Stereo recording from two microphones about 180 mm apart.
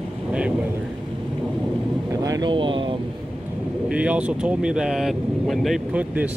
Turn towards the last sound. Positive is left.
turn(degrees=-10)  # may be behind; listen again after turning